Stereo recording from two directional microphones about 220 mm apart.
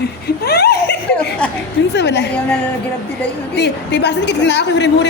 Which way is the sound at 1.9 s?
50° left (ahead or behind).